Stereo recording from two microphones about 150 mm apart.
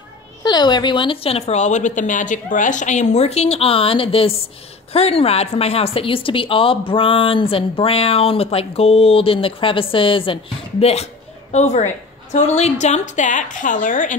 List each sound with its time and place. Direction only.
0.4 s a woman's voice: 30° left (ahead or behind); by 14.1 s 60° left (ahead or behind)